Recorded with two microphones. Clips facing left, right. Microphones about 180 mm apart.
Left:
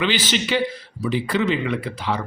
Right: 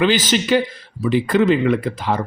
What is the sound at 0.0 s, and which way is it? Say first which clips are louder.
A man's voice: right 5 dB; 45° right (ahead or behind).